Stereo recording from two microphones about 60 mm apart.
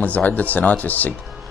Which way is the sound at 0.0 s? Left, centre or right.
Left.